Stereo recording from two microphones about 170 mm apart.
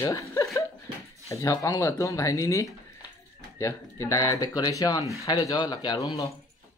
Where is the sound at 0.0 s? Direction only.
15° left (ahead or behind).